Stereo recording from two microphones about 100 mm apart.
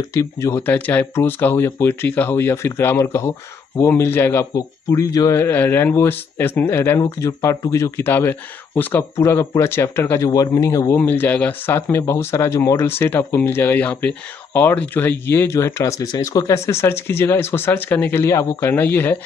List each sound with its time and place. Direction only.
0.1 s speech: 30° left (ahead or behind)
4.6 s speech: 35° left (ahead or behind)
11.0 s speech: 20° left (ahead or behind)